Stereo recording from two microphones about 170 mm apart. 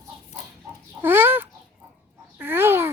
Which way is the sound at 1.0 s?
10° right (ahead or behind).